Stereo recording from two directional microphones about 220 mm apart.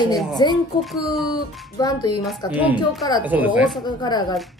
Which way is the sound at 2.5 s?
5° right (ahead or behind).